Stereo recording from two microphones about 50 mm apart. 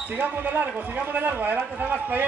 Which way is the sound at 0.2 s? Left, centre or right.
Right.